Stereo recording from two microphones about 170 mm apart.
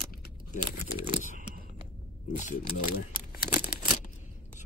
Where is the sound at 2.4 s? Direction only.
55° left (ahead or behind).